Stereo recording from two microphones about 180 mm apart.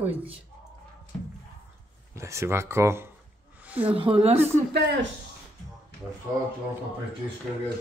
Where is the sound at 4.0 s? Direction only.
30° right (ahead or behind).